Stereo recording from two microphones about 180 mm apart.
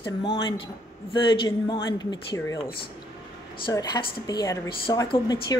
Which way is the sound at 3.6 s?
20° left (ahead or behind).